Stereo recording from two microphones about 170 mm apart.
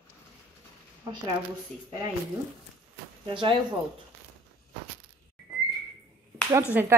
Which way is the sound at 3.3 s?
30° right (ahead or behind).